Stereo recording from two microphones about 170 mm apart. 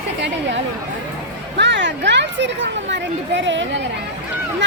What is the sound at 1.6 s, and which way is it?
A woman's voice, 90° right.